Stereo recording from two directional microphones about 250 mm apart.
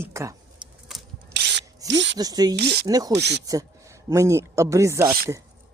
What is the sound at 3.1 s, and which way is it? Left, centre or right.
Speech, right.